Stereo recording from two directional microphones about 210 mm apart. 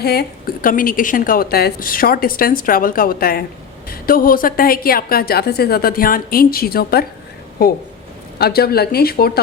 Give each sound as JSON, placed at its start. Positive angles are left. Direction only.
{"t": 0.0, "sound": "a woman's voice", "side_deg": 50}
{"t": 8.4, "sound": "a woman's voice", "side_deg": 45}